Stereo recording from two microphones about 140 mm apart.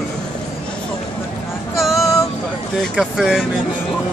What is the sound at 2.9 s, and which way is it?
Speech, 5° right (ahead or behind).